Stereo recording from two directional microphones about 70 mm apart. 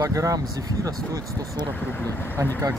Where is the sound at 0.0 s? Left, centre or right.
Right.